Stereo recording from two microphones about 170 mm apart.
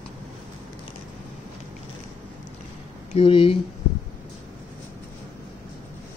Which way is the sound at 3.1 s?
35° left (ahead or behind).